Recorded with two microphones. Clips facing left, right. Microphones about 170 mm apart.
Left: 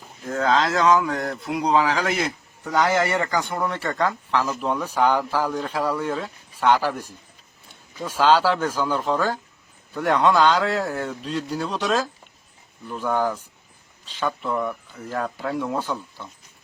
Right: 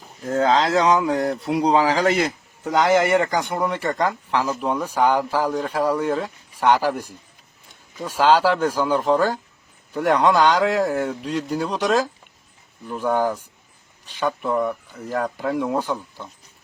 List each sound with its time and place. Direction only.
0.3 s speech: 30° right (ahead or behind)
2.7 s speech: 15° right (ahead or behind)